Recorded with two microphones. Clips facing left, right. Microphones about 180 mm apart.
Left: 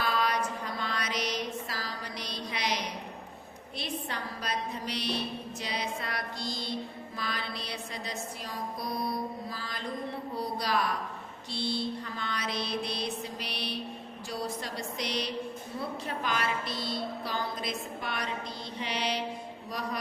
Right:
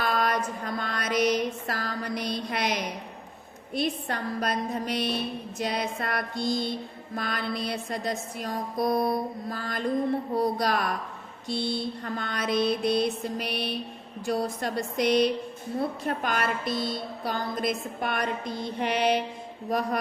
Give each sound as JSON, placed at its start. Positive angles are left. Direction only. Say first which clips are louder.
{"t": 0.0, "sound": "mantra", "louder": "right 3 dB", "side_deg": -50}
{"t": 3.8, "sound": "a woman's voice", "louder": "right 8 dB", "side_deg": -50}